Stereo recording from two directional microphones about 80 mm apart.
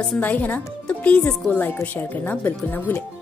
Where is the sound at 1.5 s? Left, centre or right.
Left.